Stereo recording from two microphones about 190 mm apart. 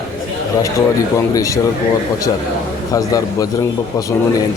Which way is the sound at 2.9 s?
20° left (ahead or behind).